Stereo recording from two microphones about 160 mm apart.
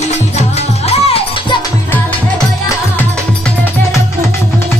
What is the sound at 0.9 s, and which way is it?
Music, 40° left (ahead or behind).